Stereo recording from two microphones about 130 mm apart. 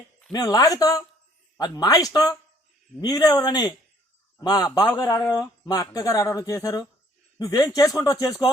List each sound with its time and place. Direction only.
0.3 s speech: 30° left (ahead or behind)